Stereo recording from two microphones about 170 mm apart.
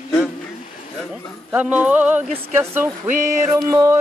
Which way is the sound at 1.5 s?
10° right (ahead or behind).